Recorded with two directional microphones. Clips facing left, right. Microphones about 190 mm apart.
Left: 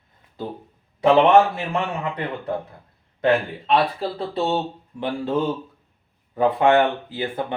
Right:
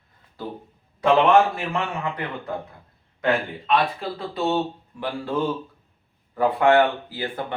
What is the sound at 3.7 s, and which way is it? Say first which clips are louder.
Speech: left 2 dB; 30° left (ahead or behind).